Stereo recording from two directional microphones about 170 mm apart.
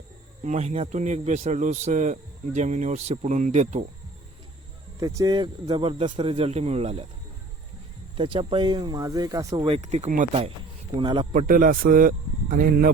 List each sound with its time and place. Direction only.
0.4 s speech: 45° right (ahead or behind)
4.9 s speech: 20° right (ahead or behind); by 7.1 s 40° right (ahead or behind)
8.1 s speech: 30° right (ahead or behind)
9.6 s speech: 40° right (ahead or behind)
10.9 s speech: 30° right (ahead or behind)
11.3 s speech: 50° right (ahead or behind)